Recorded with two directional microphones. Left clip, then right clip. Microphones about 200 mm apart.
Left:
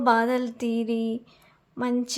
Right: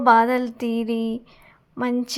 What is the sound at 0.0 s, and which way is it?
A woman's voice, 10° right (ahead or behind).